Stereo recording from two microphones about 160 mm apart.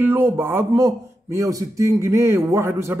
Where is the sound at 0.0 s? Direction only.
15° right (ahead or behind).